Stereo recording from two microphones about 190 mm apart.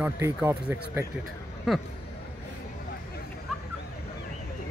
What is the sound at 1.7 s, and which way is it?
Speech, centre (ahead or behind).